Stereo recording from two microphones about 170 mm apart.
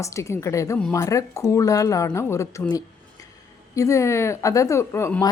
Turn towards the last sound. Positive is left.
turn(degrees=15)  # may be behind; listen again after turning